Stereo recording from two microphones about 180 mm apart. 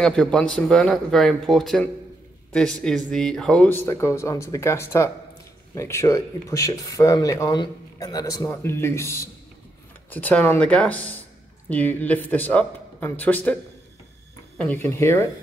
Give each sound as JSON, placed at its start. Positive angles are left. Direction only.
{"t": 0.0, "sound": "speech", "side_deg": 5}
{"t": 14.6, "sound": "speech", "side_deg": 10}